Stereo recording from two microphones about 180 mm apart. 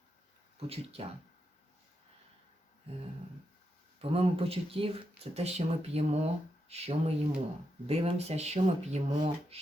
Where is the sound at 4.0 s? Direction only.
35° right (ahead or behind).